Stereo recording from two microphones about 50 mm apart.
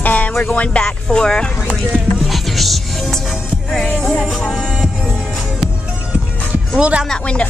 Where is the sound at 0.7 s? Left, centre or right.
Centre.